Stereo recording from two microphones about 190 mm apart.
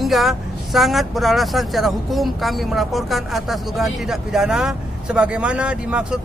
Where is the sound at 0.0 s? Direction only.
Centre (ahead or behind).